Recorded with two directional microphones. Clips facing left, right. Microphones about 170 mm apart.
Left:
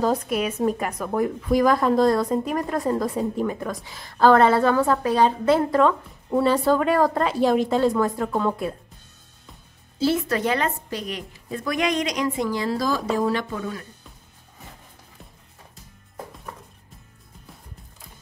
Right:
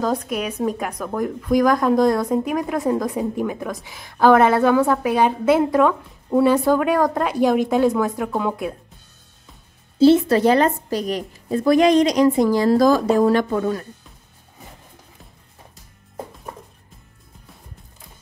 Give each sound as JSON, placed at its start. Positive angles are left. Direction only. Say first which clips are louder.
{"t": 0.0, "sound": "a woman's voice", "louder": "even", "side_deg": 5}
{"t": 9.9, "sound": "a woman's voice", "louder": "right 9 dB", "side_deg": -25}